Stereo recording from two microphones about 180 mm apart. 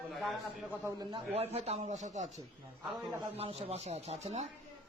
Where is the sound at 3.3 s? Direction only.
35° right (ahead or behind).